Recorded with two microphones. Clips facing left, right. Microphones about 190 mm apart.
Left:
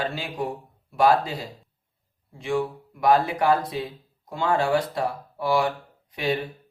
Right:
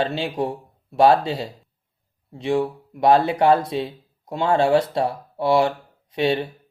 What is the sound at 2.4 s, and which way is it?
Speech, 25° right (ahead or behind).